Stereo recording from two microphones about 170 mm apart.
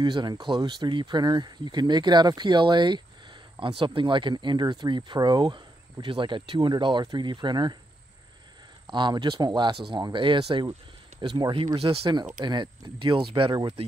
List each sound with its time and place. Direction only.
0.0 s speech: 25° right (ahead or behind)
8.9 s speech: 25° right (ahead or behind)